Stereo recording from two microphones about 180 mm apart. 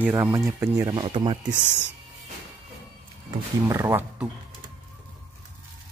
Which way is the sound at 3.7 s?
15° right (ahead or behind).